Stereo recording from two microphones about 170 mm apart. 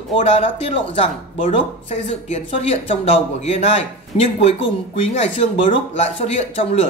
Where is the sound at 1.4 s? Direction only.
40° left (ahead or behind).